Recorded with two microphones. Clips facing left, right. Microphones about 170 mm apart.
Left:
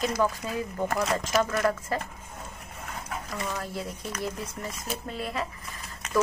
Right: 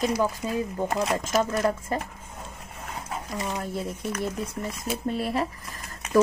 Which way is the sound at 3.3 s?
25° right (ahead or behind).